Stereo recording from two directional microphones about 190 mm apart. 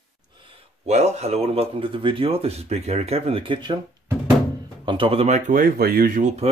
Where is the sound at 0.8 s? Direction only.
35° right (ahead or behind).